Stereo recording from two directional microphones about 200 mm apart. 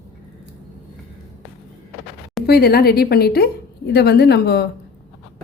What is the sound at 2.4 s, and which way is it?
A woman's voice, 50° left (ahead or behind).